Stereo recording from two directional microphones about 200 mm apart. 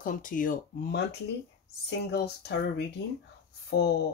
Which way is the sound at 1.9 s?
55° left (ahead or behind).